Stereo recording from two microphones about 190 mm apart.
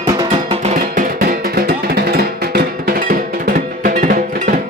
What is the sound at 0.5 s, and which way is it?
Music, 35° right (ahead or behind).